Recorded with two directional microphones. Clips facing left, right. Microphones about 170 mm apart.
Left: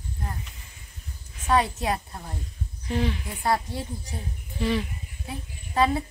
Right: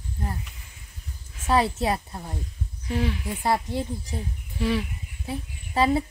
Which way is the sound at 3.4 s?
25° right (ahead or behind).